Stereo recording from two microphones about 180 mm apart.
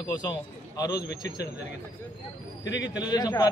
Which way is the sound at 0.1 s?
25° left (ahead or behind).